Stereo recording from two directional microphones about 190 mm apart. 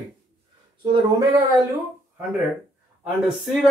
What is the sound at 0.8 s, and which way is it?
Speech, 25° right (ahead or behind).